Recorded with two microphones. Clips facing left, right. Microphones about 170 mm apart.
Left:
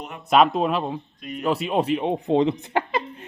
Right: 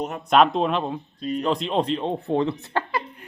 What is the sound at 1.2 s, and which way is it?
Speech, 35° right (ahead or behind).